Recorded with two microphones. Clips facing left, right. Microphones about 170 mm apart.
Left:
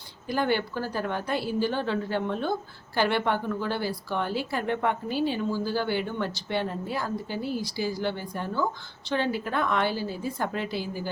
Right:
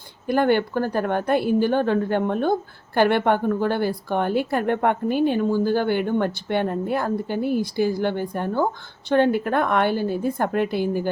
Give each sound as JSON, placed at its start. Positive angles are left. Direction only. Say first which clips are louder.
{"t": 0.3, "sound": "a woman's voice", "louder": "right 7 dB", "side_deg": -55}